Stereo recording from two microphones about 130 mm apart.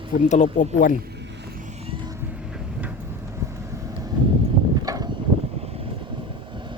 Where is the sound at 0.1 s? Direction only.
65° left (ahead or behind); by 0.9 s 90° left.